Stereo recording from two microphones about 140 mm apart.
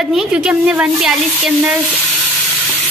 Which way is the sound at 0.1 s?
10° right (ahead or behind).